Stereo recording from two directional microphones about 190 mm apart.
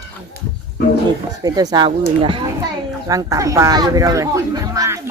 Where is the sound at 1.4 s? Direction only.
20° right (ahead or behind).